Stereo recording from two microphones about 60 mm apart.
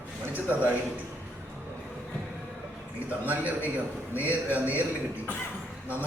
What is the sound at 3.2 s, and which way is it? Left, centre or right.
A man's voice, right.